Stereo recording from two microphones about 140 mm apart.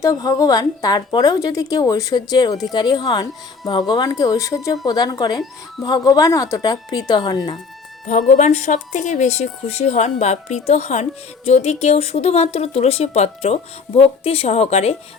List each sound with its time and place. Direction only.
0.0 s speech: 25° left (ahead or behind)
8.3 s speech: 55° left (ahead or behind)